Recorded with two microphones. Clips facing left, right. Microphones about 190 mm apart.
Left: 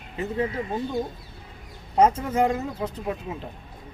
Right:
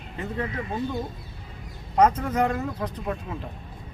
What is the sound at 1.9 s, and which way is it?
Speech, 25° left (ahead or behind).